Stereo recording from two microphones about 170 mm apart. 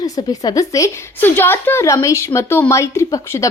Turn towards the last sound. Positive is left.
turn(degrees=15)  # may be behind; listen again after turning